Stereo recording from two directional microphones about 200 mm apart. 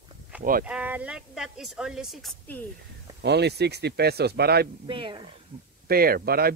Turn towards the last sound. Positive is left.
turn(degrees=-50)  # may be behind; listen again after turning